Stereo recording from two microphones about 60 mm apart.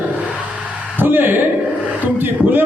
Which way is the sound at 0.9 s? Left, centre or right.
Right.